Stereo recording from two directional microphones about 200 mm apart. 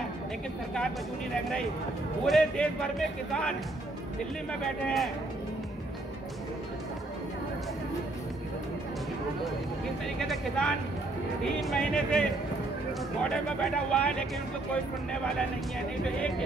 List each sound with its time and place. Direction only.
2.2 s speech: 5° left (ahead or behind)
10.2 s speech: centre (ahead or behind)
11.7 s speech: 5° left (ahead or behind)
16.2 s speech: 5° left (ahead or behind)